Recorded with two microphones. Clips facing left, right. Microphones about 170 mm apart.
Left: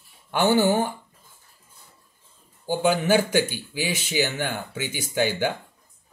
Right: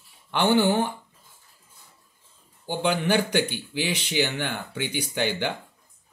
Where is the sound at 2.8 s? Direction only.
5° left (ahead or behind).